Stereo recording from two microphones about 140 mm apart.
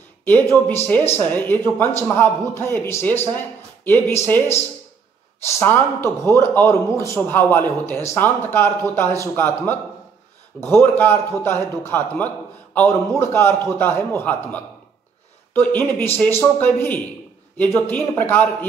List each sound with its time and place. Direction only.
0.2 s a man's voice: 10° left (ahead or behind)
5.5 s a man's voice: 15° left (ahead or behind)